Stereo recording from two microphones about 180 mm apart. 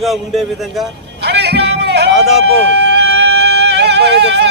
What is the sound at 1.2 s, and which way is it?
Music, 70° right (ahead or behind).